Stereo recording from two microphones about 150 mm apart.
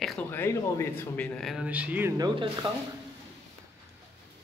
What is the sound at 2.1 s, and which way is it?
Speech, 30° right (ahead or behind).